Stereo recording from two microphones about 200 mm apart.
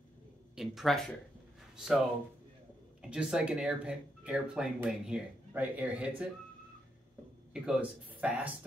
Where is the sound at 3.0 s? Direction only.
5° right (ahead or behind).